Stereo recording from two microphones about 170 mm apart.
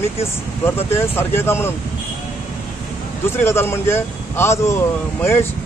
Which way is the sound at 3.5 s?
15° left (ahead or behind).